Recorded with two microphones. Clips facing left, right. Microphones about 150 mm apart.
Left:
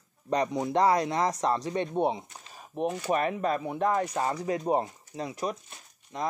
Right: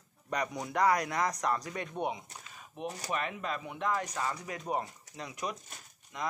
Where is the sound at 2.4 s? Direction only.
35° left (ahead or behind).